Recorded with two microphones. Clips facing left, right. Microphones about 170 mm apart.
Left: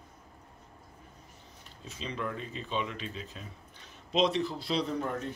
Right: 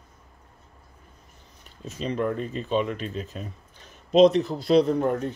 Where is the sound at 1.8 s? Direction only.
45° right (ahead or behind).